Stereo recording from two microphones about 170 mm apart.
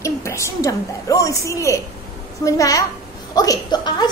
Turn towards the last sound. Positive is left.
turn(degrees=25)  # may be behind; listen again after turning